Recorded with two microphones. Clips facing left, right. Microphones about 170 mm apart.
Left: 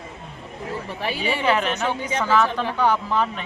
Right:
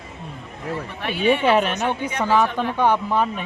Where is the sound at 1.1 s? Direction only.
55° right (ahead or behind).